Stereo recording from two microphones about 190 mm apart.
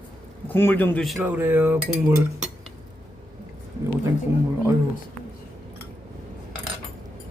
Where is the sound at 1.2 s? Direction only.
10° right (ahead or behind).